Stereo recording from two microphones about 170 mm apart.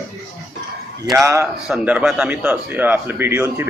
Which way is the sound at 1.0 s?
15° right (ahead or behind).